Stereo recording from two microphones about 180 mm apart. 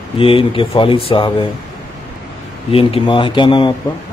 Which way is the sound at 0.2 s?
30° left (ahead or behind).